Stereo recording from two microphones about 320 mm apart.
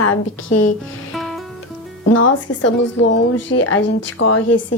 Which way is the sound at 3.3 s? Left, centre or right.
Left.